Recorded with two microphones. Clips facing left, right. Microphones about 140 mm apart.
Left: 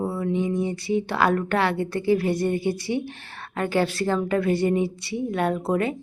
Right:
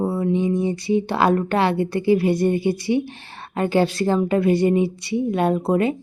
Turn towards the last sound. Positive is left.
turn(degrees=-20)  # may be behind; listen again after turning